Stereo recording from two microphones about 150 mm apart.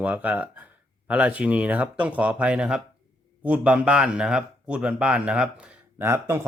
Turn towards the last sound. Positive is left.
turn(degrees=-15)  # may be behind; listen again after turning